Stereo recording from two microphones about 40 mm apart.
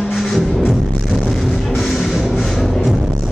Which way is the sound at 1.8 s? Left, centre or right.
Centre.